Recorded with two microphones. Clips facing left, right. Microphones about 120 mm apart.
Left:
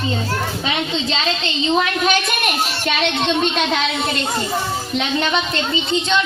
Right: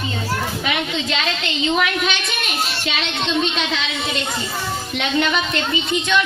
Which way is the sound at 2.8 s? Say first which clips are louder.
Left 5 dB; 55° left (ahead or behind).